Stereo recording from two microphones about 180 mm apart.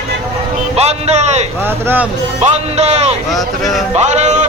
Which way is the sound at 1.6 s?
10° right (ahead or behind).